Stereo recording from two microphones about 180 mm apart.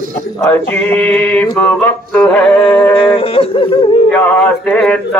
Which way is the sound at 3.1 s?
30° left (ahead or behind).